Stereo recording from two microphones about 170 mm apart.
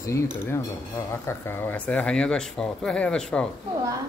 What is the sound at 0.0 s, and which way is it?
Speech, 15° left (ahead or behind).